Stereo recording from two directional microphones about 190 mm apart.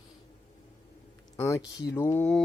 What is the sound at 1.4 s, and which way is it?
Speech, 15° left (ahead or behind).